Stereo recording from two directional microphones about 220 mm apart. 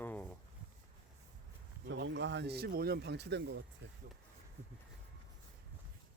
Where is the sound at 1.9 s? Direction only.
55° right (ahead or behind).